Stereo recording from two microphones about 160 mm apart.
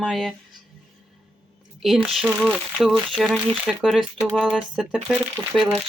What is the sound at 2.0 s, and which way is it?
Speech, 5° right (ahead or behind).